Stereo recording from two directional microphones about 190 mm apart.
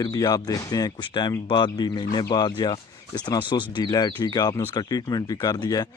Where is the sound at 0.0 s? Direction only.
20° left (ahead or behind).